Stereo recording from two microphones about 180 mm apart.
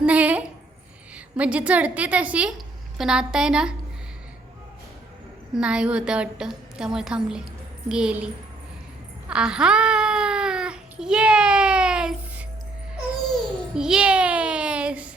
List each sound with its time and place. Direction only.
0.0 s a sound: 5° right (ahead or behind)
1.1 s a woman's voice: 5° right (ahead or behind)
5.5 s a woman's voice: 5° right (ahead or behind)
9.3 s babbling: 5° right (ahead or behind)
13.7 s child singing: 5° right (ahead or behind)